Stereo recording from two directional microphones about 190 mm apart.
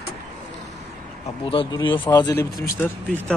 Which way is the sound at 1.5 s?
25° left (ahead or behind).